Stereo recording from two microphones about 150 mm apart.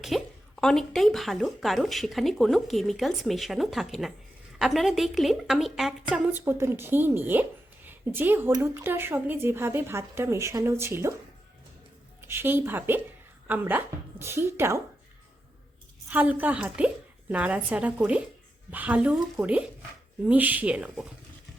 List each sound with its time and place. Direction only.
0.0 s a woman's voice: centre (ahead or behind); by 11.1 s 15° right (ahead or behind)
12.3 s a woman's voice: 15° right (ahead or behind)
16.0 s a woman's voice: 10° right (ahead or behind)